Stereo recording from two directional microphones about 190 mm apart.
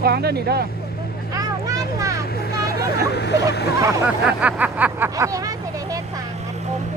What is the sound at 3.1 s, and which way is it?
Vehicle, 60° left (ahead or behind).